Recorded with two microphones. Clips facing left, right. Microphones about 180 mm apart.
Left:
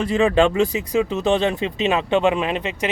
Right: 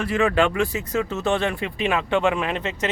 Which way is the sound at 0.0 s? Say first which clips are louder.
Left 3 dB; 25° left (ahead or behind).